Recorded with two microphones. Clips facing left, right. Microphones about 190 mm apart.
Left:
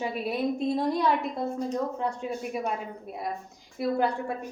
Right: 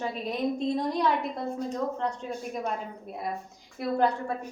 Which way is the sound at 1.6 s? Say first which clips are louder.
Left 1 dB; 5° left (ahead or behind).